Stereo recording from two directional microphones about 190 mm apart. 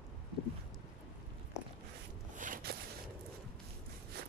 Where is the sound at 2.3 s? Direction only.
45° right (ahead or behind).